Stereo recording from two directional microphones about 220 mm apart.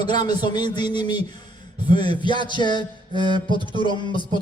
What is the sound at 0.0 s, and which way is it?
Speech, 20° left (ahead or behind).